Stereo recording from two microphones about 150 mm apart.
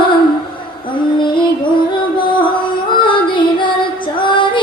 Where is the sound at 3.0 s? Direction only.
30° left (ahead or behind).